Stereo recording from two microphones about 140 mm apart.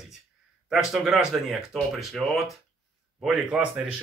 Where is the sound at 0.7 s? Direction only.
5° right (ahead or behind).